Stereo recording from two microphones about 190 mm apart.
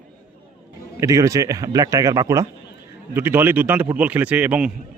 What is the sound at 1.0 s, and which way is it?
A man's voice, 15° right (ahead or behind).